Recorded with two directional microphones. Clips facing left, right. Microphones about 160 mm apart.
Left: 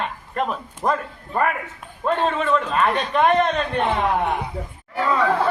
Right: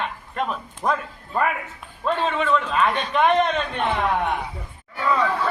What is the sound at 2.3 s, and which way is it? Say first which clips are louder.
A man's voice: left 1 dB; centre (ahead or behind).